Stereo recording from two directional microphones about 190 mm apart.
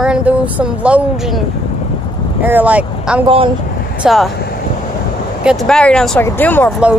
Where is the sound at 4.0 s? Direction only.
Centre (ahead or behind).